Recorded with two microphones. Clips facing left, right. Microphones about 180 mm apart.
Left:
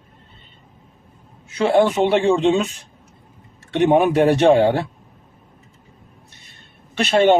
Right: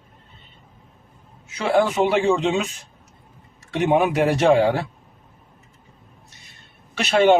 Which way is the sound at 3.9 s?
35° left (ahead or behind).